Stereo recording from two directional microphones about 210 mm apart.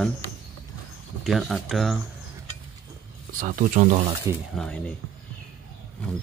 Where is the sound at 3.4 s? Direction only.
40° right (ahead or behind).